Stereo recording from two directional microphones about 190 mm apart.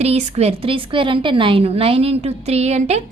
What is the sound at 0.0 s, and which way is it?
A woman's voice, 35° right (ahead or behind).